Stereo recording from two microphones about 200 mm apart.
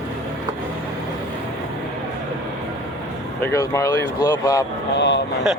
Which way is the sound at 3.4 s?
15° left (ahead or behind).